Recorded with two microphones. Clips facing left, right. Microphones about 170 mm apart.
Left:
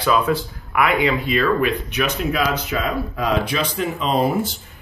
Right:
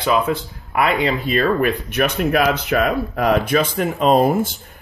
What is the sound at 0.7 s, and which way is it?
Speech, 35° right (ahead or behind).